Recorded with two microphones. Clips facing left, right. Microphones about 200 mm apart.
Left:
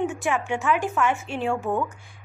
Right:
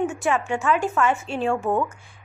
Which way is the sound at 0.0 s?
15° left (ahead or behind).